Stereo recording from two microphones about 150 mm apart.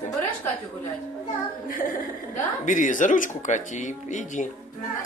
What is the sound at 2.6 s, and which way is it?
Speech, 55° left (ahead or behind).